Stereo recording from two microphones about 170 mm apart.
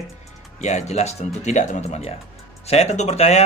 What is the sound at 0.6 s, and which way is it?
A man's voice, 40° left (ahead or behind).